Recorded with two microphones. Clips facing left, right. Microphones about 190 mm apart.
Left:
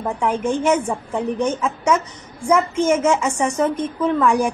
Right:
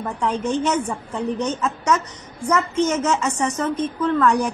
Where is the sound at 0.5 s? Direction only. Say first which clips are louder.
Left 4 dB; 10° left (ahead or behind).